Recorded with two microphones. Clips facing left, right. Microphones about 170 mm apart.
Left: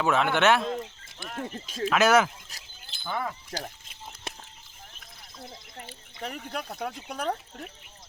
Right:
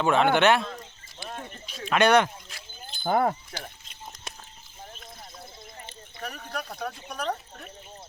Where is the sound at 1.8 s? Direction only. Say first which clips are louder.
Right 1 dB; centre (ahead or behind).